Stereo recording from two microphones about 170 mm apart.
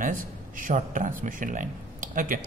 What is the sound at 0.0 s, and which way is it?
Speech, 50° right (ahead or behind).